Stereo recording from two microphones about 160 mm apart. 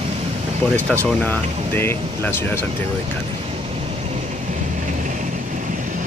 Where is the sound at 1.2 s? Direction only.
10° left (ahead or behind).